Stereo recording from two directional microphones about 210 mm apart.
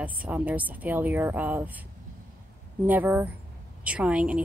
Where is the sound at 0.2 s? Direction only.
5° right (ahead or behind).